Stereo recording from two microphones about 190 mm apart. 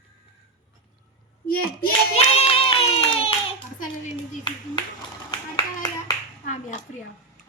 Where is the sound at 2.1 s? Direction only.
30° left (ahead or behind).